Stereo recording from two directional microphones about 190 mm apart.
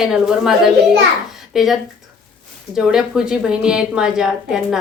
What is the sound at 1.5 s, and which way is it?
A woman's voice, centre (ahead or behind).